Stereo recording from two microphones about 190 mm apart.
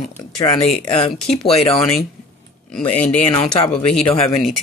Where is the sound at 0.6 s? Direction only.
35° left (ahead or behind).